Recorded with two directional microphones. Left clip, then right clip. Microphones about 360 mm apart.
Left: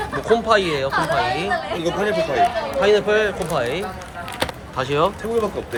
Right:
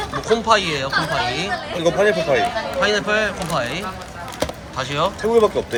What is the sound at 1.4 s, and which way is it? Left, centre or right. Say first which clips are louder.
Speech: right 1 dB; right.